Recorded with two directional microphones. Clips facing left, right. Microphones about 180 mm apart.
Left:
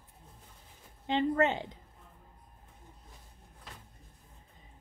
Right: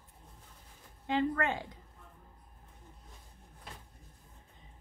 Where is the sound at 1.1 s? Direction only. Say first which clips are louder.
Left 3 dB; 25° left (ahead or behind).